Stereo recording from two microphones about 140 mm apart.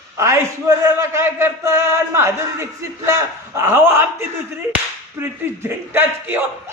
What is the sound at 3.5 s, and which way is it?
Speech, 15° right (ahead or behind).